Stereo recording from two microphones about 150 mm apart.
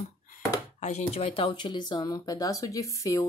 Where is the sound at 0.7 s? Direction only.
50° left (ahead or behind).